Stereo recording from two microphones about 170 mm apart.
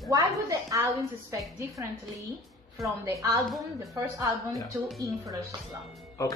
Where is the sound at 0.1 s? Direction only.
20° right (ahead or behind).